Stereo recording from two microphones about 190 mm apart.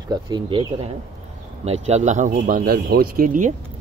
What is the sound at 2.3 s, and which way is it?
Speech, 55° right (ahead or behind).